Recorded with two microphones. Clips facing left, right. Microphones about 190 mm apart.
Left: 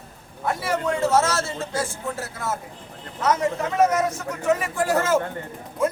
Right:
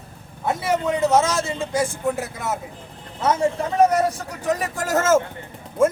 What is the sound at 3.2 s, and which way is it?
Speech, 30° right (ahead or behind).